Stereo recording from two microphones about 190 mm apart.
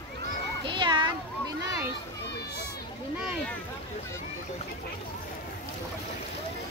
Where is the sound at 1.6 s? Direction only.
15° right (ahead or behind).